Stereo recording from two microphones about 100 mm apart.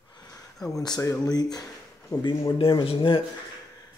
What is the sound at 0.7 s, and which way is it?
Speech, 40° left (ahead or behind).